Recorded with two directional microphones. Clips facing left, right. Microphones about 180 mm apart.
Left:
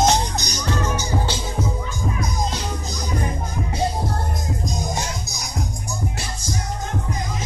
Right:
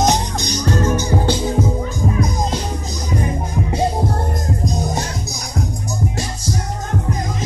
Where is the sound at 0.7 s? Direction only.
50° right (ahead or behind).